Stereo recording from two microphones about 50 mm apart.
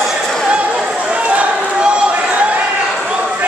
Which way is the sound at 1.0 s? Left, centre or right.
Right.